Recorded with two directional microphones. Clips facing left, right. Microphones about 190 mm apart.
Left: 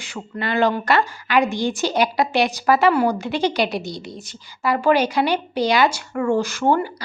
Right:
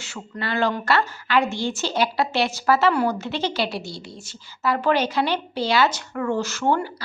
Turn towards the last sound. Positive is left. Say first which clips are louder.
# left 3 dB
turn(degrees=15)  # may be behind; listen again after turning